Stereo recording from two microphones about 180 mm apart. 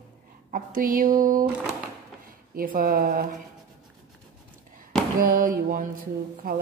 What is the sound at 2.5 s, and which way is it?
Speech, 50° right (ahead or behind).